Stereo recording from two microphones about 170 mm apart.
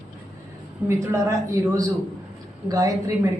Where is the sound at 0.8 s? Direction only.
15° right (ahead or behind).